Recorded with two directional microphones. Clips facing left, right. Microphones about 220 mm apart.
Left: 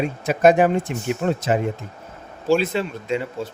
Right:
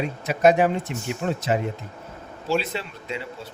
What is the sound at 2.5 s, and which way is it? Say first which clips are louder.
Speech: left 6 dB; 50° left (ahead or behind).